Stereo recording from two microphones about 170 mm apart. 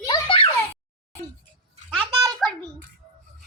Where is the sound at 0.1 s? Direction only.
30° left (ahead or behind).